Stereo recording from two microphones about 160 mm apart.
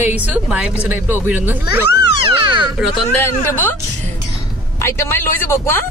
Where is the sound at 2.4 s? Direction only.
30° right (ahead or behind).